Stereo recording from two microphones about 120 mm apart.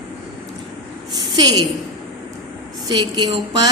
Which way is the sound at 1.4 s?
35° right (ahead or behind).